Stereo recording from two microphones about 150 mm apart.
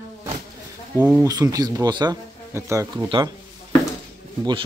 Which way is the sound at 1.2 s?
20° right (ahead or behind).